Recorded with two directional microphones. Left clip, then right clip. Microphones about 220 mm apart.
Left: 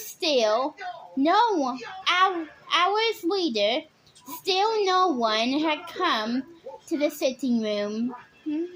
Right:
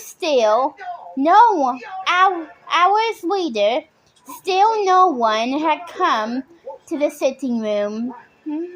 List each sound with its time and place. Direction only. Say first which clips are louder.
0.0 s a woman's voice: right 6 dB; 20° right (ahead or behind)